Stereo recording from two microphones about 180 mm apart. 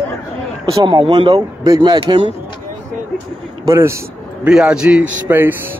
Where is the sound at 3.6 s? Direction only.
15° right (ahead or behind).